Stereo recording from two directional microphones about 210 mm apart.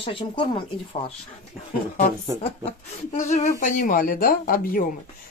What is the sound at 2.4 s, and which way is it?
Speech, 30° left (ahead or behind).